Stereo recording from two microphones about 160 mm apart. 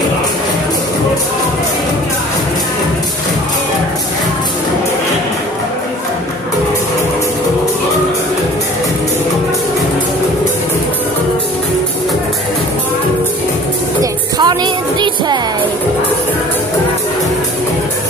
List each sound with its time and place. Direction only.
14.4 s music: 25° right (ahead or behind)